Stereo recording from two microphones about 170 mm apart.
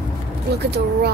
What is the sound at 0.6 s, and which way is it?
Speech, 75° right (ahead or behind).